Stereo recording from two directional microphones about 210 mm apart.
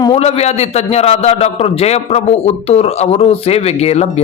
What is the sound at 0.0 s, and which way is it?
A man's voice, 30° left (ahead or behind).